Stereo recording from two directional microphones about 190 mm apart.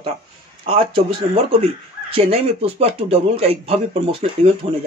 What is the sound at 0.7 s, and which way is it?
Speech, 30° right (ahead or behind).